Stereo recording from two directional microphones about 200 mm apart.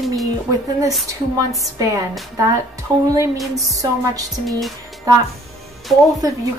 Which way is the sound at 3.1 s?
15° right (ahead or behind).